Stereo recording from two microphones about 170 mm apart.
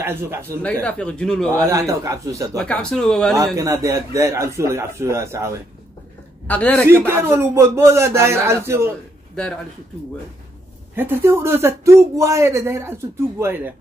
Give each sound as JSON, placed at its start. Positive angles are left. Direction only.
{"t": 0.0, "sound": "speech", "side_deg": -15}
{"t": 0.8, "sound": "speech", "side_deg": 5}
{"t": 1.5, "sound": "a man's voice", "side_deg": -15}
{"t": 2.5, "sound": "speech", "side_deg": 5}
{"t": 3.5, "sound": "speech", "side_deg": -20}
{"t": 6.4, "sound": "a man's voice", "side_deg": 10}
{"t": 6.9, "sound": "speech", "side_deg": -15}
{"t": 9.3, "sound": "speech", "side_deg": 5}
{"t": 11.0, "sound": "speech", "side_deg": -15}